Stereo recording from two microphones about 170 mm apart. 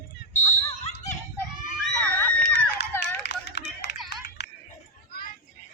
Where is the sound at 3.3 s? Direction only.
90° left.